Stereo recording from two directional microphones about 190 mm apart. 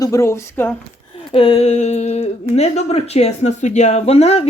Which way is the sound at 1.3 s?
30° left (ahead or behind).